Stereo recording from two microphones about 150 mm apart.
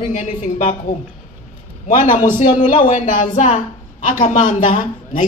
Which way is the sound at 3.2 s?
50° left (ahead or behind).